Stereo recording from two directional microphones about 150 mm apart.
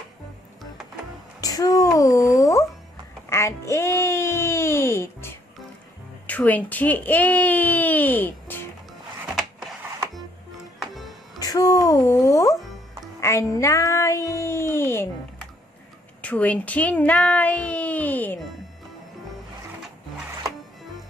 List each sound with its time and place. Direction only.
1.4 s a sound: 25° left (ahead or behind)
3.3 s music: 15° left (ahead or behind)
6.2 s speech: 10° left (ahead or behind)
11.3 s child singing: 25° left (ahead or behind)
16.2 s speech: 10° left (ahead or behind)